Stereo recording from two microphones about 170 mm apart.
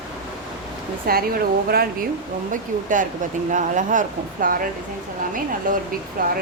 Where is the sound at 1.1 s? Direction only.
60° right (ahead or behind).